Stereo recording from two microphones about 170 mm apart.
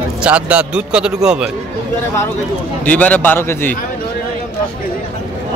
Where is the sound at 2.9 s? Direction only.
10° left (ahead or behind).